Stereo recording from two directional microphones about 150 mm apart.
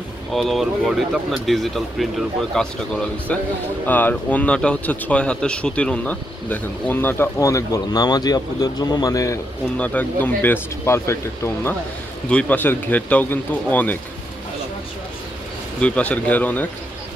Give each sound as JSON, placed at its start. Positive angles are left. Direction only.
{"t": 0.3, "sound": "speech", "side_deg": 0}
{"t": 3.8, "sound": "speech", "side_deg": 10}
{"t": 9.8, "sound": "speech", "side_deg": 10}
{"t": 15.8, "sound": "speech", "side_deg": 10}